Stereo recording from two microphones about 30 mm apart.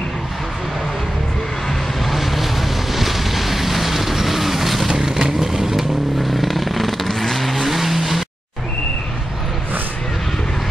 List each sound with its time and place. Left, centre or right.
2.0 s boat: centre
4.8 s vehicle: centre
6.2 s vehicle: centre